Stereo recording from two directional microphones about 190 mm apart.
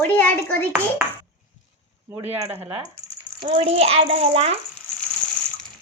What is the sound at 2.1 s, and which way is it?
Speech, 10° right (ahead or behind).